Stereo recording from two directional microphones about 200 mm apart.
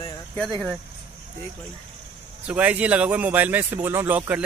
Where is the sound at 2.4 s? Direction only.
5° right (ahead or behind).